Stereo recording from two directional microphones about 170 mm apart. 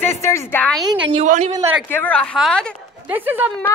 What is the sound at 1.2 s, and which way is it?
Speech, 45° right (ahead or behind).